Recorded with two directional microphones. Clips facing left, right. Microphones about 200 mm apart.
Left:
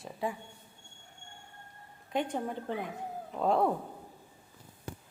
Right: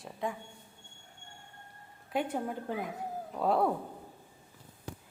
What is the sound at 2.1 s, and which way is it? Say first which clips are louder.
Speech: even; 5° right (ahead or behind).